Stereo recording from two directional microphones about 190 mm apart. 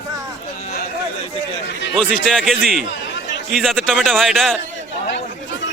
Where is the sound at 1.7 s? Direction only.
65° left (ahead or behind).